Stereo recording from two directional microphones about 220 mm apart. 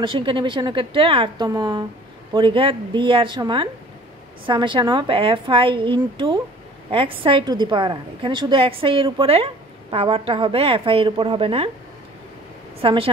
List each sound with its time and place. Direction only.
0.0 s a woman's voice: 25° right (ahead or behind)
12.8 s a woman's voice: 25° right (ahead or behind)